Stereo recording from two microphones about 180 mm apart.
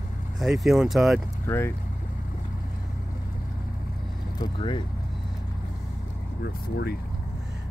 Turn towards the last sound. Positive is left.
turn(degrees=65)  # may be behind; listen again after turning